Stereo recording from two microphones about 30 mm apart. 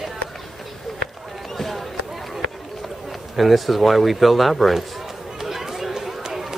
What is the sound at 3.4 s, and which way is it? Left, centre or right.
Speech, centre.